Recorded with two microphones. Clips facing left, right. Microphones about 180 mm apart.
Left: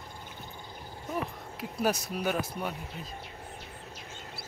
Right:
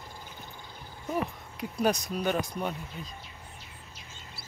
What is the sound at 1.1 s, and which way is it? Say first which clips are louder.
Speech: right 3 dB; 5° left (ahead or behind).